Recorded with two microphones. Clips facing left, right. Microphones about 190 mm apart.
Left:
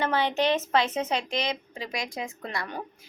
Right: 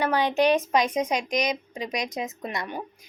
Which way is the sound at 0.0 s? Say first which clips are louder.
Right 3 dB; 15° right (ahead or behind).